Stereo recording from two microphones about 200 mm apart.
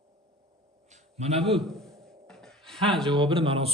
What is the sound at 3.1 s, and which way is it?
Speech, 25° right (ahead or behind).